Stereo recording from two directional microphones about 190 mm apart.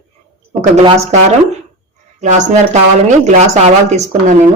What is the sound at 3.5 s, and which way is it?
Speech, 35° right (ahead or behind).